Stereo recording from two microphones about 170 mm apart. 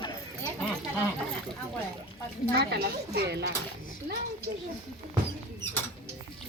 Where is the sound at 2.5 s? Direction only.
70° right (ahead or behind).